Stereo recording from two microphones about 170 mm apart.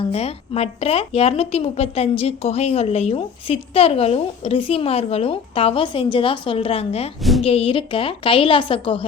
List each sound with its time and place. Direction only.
0.1 s a woman's voice: 35° left (ahead or behind)
7.2 s a woman's voice: centre (ahead or behind)
7.4 s a woman's voice: 35° left (ahead or behind)